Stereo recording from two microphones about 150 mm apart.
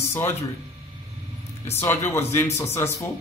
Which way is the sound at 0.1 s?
20° left (ahead or behind).